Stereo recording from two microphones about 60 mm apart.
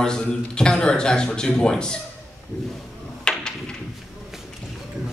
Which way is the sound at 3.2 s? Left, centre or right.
Centre.